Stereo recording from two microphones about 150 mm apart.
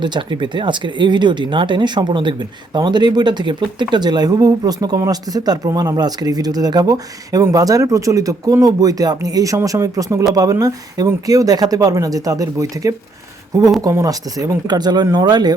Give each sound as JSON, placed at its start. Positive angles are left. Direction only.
{"t": 0.0, "sound": "speech", "side_deg": -30}